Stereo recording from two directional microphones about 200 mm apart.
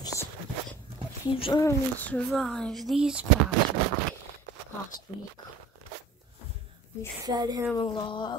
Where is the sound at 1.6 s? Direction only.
10° left (ahead or behind).